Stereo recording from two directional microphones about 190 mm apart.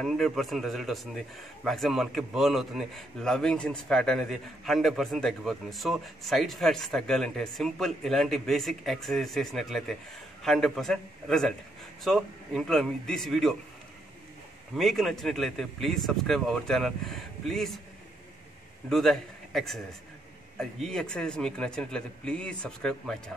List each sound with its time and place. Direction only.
0.0 s a man's voice: centre (ahead or behind)
14.8 s a man's voice: centre (ahead or behind)
18.9 s a man's voice: centre (ahead or behind)